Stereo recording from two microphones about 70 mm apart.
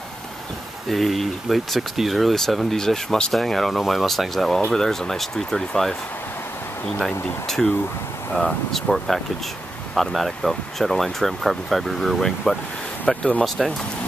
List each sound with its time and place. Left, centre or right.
0.8 s speech: centre
7.4 s speech: centre
13.4 s speech: centre